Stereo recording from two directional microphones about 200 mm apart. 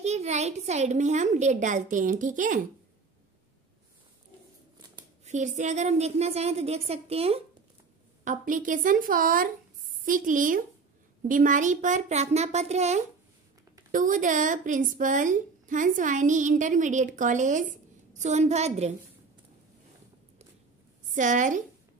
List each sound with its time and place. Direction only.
0.0 s a woman's voice: 35° right (ahead or behind)
5.2 s a sound: 35° right (ahead or behind)
5.6 s a woman's voice: 35° right (ahead or behind)
8.2 s a woman's voice: 40° right (ahead or behind)
21.1 s a woman's voice: 40° right (ahead or behind)